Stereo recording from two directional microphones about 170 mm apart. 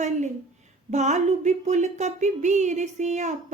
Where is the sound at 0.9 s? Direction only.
45° right (ahead or behind).